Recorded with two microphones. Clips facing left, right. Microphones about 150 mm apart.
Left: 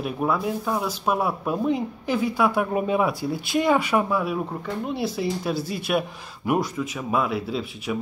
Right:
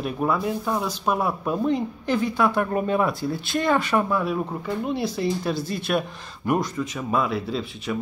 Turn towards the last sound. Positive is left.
turn(degrees=5)  # may be behind; listen again after turning